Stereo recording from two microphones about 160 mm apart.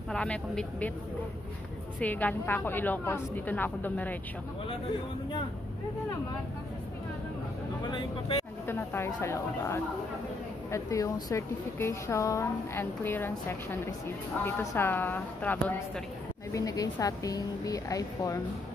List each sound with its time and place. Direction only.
0.1 s a woman's voice: 5° left (ahead or behind)
2.0 s a woman's voice: 10° left (ahead or behind)
7.9 s speech: 35° left (ahead or behind)
8.6 s a woman's voice: 15° left (ahead or behind)
16.5 s speech: 20° left (ahead or behind)